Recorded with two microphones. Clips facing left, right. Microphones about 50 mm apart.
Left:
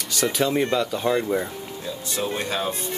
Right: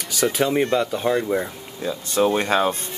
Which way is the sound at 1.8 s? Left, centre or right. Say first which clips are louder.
Right 9 dB; right.